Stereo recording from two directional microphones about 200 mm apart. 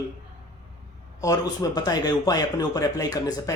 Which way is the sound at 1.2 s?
20° left (ahead or behind).